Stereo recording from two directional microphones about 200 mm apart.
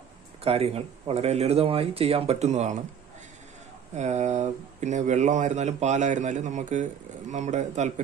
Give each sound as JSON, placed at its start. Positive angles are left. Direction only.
{"t": 0.4, "sound": "speech", "side_deg": -30}
{"t": 3.9, "sound": "speech", "side_deg": -35}